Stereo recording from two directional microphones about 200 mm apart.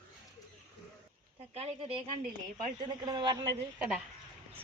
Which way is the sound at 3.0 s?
20° right (ahead or behind).